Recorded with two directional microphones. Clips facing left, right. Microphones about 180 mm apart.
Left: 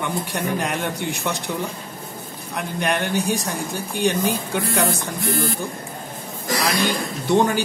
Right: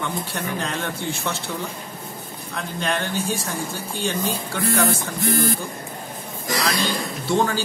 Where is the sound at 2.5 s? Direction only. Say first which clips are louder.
Left 2 dB; 15° left (ahead or behind).